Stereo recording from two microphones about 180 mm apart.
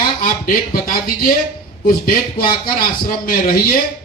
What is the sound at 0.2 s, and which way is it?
A man's voice, 50° left (ahead or behind).